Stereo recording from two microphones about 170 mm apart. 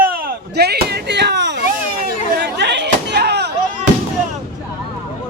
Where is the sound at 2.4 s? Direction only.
90° right.